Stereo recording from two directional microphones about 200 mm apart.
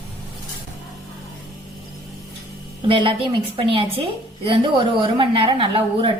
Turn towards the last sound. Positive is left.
turn(degrees=-25)  # may be behind; listen again after turning